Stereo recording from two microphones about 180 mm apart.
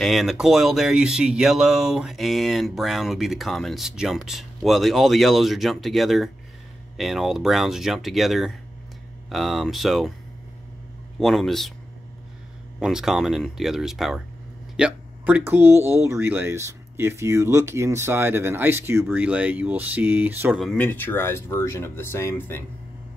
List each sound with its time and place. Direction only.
0.0 s speech: centre (ahead or behind)
11.1 s speech: centre (ahead or behind)
12.8 s speech: 5° right (ahead or behind)
20.6 s speech: 10° left (ahead or behind)